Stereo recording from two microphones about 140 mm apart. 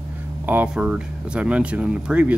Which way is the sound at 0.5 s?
10° right (ahead or behind).